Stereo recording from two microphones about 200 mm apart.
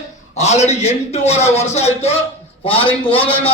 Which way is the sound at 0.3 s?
35° left (ahead or behind).